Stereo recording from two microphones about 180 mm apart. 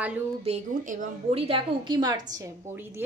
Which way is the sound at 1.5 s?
25° right (ahead or behind).